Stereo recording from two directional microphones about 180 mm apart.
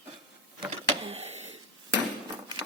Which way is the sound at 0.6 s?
30° right (ahead or behind).